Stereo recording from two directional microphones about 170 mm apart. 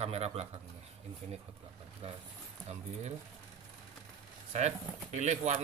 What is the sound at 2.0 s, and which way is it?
Speech, 40° right (ahead or behind).